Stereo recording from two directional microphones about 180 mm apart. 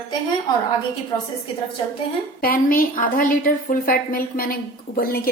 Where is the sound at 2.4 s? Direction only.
50° left (ahead or behind).